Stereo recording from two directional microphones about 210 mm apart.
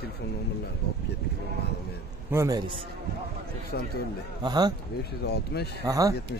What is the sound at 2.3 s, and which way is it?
Speech, 15° right (ahead or behind).